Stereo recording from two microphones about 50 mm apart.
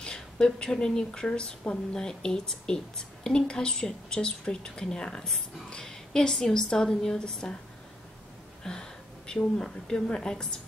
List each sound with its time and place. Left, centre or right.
0.0 s a woman's voice: centre
8.6 s a woman's voice: centre